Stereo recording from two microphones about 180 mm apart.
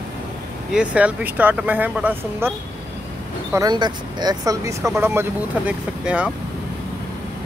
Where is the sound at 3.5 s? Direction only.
20° right (ahead or behind); by 6.3 s 5° right (ahead or behind).